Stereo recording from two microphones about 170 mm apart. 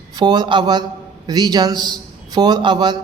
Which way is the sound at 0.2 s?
25° right (ahead or behind).